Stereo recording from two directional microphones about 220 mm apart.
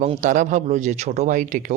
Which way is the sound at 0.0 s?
35° right (ahead or behind).